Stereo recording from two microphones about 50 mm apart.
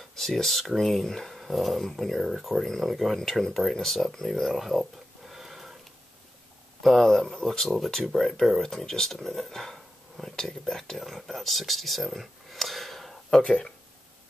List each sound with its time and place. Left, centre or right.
0.1 s speech: centre
6.8 s speech: centre
13.4 s speech: centre